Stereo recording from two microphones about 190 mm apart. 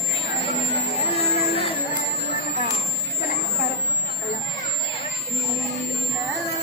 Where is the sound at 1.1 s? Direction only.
30° left (ahead or behind).